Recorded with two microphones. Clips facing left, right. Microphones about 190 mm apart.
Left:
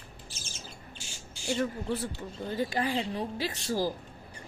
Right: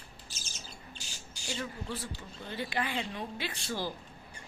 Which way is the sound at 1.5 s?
55° left (ahead or behind).